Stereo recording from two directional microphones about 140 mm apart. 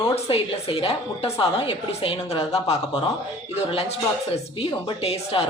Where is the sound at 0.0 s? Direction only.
45° left (ahead or behind).